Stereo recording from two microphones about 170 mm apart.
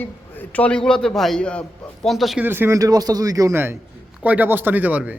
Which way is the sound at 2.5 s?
15° right (ahead or behind).